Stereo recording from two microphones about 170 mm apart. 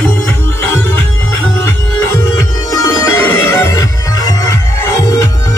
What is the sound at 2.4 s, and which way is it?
Music, 20° left (ahead or behind).